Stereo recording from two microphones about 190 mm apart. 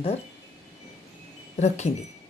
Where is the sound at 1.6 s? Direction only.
35° left (ahead or behind).